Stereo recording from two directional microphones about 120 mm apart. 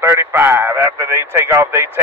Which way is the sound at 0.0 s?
25° right (ahead or behind).